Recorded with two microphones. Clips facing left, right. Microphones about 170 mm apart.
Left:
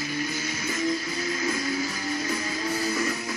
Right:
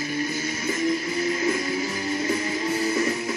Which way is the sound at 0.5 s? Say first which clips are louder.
Right 3 dB; 50° right (ahead or behind).